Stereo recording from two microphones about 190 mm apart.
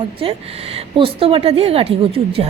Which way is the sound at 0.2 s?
30° right (ahead or behind).